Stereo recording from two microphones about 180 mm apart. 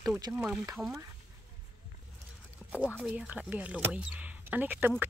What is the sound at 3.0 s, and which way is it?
Speech, 5° right (ahead or behind).